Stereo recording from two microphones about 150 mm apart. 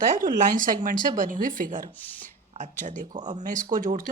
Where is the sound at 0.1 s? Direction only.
65° right (ahead or behind).